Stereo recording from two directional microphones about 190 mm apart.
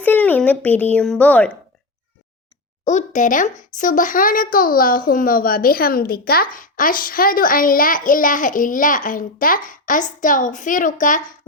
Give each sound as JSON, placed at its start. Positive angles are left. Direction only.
{"t": 0.0, "sound": "speech", "side_deg": 10}
{"t": 2.8, "sound": "a woman's voice", "side_deg": 40}